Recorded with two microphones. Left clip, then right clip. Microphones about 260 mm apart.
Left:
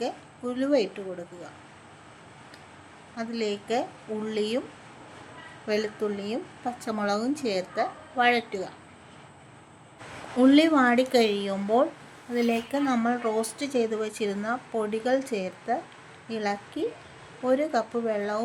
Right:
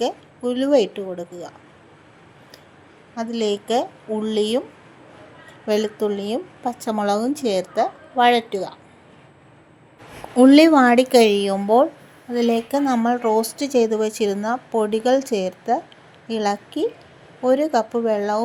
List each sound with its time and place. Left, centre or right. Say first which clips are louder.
0.0 s speech: right 8 dB; right
3.2 s speech: right 8 dB; right
5.6 s speech: right 7 dB; right
10.3 s speech: right 8 dB; right